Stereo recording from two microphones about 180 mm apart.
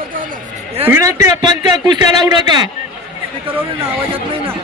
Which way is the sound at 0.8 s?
15° right (ahead or behind).